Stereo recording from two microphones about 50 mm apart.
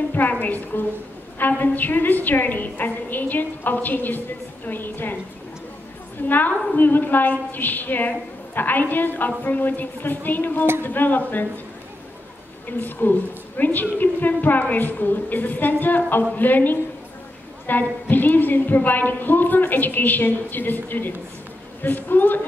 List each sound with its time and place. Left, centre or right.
0.1 s a woman's voice: left
6.2 s a woman's voice: left
12.6 s a woman's voice: left